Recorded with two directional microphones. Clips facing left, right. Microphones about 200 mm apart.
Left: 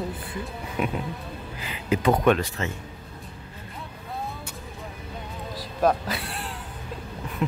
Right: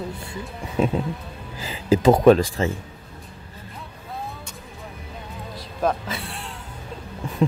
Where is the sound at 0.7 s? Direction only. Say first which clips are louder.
Right 6 dB; 30° right (ahead or behind).